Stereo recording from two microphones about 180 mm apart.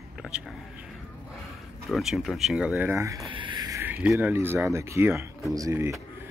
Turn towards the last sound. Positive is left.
turn(degrees=-15)  # may be behind; listen again after turning